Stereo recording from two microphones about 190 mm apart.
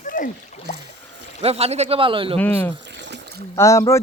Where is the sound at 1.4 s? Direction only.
30° right (ahead or behind).